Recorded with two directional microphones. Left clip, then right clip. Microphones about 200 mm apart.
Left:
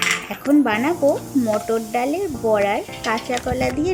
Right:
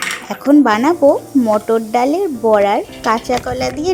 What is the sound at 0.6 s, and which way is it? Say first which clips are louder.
A woman's voice: right 7 dB; 20° right (ahead or behind).